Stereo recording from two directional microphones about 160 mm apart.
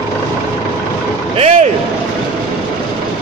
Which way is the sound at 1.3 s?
35° right (ahead or behind).